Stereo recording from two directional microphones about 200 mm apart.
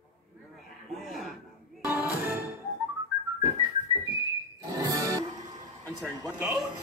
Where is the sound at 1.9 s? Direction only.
10° right (ahead or behind).